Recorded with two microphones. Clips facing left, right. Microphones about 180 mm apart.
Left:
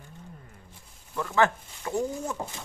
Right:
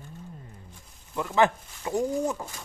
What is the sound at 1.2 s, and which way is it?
Speech, 15° right (ahead or behind).